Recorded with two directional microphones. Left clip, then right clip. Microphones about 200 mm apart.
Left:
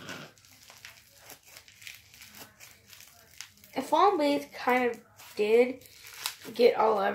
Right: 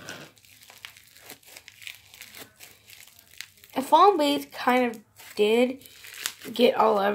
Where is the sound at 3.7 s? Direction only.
50° right (ahead or behind).